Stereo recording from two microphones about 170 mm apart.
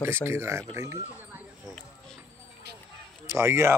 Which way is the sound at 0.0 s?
15° right (ahead or behind).